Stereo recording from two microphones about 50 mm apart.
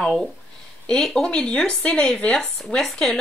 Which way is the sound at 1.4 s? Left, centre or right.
Left.